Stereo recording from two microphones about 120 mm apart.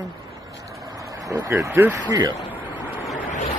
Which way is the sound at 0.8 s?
25° right (ahead or behind).